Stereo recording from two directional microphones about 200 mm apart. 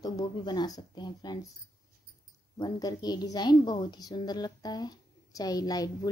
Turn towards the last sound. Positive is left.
turn(degrees=20)  # may be behind; listen again after turning